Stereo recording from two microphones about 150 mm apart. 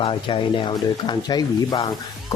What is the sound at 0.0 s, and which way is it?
Speech, 35° left (ahead or behind).